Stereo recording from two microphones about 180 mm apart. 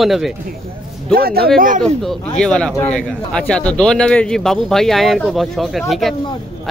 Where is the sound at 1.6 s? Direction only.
50° right (ahead or behind).